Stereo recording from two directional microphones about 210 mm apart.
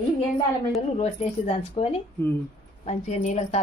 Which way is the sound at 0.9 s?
30° left (ahead or behind).